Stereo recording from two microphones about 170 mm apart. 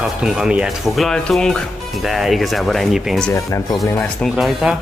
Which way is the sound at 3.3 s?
20° left (ahead or behind).